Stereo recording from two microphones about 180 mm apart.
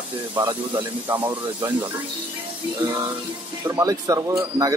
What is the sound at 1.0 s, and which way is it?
Speech, 10° right (ahead or behind).